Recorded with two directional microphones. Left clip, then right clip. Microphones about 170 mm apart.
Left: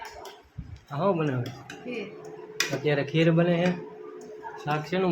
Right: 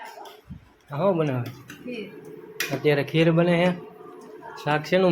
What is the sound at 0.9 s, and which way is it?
Speech, 15° right (ahead or behind).